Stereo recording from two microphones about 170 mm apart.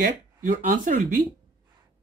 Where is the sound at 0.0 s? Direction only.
50° right (ahead or behind).